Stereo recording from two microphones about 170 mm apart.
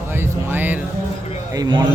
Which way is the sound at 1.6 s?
25° right (ahead or behind).